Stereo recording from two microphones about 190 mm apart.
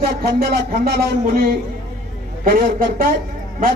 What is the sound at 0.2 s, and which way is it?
Speech, 50° right (ahead or behind).